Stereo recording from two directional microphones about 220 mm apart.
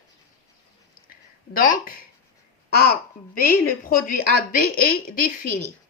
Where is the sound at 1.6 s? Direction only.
40° left (ahead or behind).